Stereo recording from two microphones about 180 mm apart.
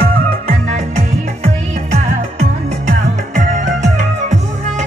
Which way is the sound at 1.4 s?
35° right (ahead or behind).